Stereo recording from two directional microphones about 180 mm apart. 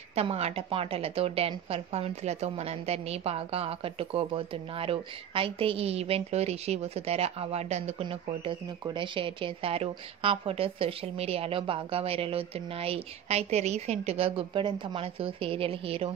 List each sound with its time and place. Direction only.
0.1 s speech: 35° right (ahead or behind)
8.0 s speech: 25° right (ahead or behind)